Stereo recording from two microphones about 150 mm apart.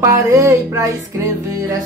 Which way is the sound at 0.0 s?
20° right (ahead or behind).